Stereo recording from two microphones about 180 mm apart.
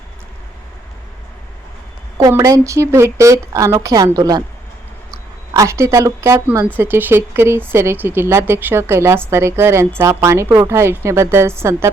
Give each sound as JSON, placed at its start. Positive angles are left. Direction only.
{"t": 2.1, "sound": "speech", "side_deg": -15}
{"t": 5.5, "sound": "speech", "side_deg": -15}